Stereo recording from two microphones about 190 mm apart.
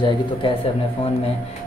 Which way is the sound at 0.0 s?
25° left (ahead or behind).